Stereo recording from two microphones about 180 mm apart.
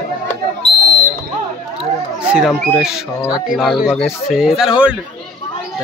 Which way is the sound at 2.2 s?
Centre (ahead or behind).